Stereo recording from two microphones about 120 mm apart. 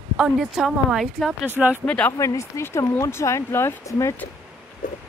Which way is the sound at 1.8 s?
10° left (ahead or behind).